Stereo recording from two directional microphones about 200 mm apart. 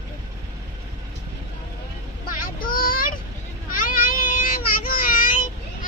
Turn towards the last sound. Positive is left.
turn(degrees=40)  # may be behind; listen again after turning